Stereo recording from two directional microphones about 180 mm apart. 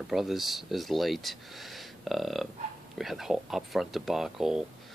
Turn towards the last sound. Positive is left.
turn(degrees=0)  # may be behind; listen again after turning